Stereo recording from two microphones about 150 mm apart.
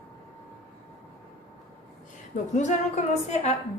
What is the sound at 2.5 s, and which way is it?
A woman's voice, 50° left (ahead or behind).